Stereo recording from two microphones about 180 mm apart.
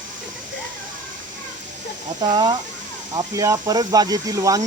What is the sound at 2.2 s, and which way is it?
Speech, 25° right (ahead or behind).